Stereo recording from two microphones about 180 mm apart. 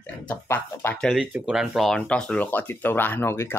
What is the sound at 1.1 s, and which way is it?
Speech, 5° right (ahead or behind).